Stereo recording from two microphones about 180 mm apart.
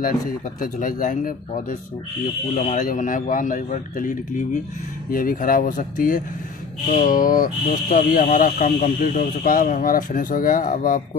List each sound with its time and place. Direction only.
0.6 s speech: 50° left (ahead or behind)